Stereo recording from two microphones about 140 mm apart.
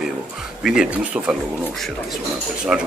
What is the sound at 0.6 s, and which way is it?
Speech, 5° right (ahead or behind).